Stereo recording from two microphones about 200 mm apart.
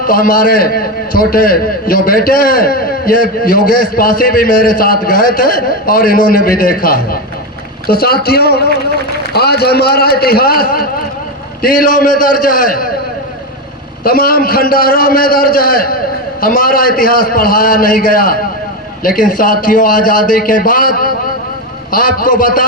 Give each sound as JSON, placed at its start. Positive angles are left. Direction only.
{"t": 0.0, "sound": "a man's voice", "side_deg": 45}
{"t": 14.0, "sound": "a man's voice", "side_deg": 45}